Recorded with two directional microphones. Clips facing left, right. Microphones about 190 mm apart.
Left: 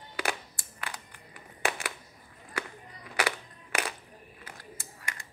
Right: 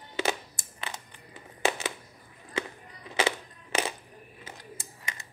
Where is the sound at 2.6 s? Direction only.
20° right (ahead or behind).